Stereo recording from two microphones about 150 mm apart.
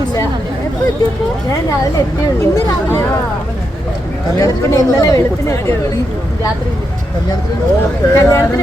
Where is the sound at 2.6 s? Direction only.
15° left (ahead or behind).